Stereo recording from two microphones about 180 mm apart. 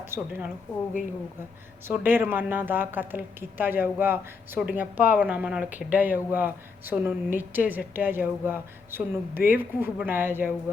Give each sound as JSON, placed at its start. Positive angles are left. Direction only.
{"t": 0.0, "sound": "a woman's voice", "side_deg": -10}
{"t": 1.8, "sound": "a woman's voice", "side_deg": -10}